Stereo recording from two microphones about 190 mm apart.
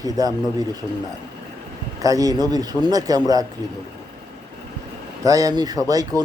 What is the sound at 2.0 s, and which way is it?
Speech, 20° right (ahead or behind).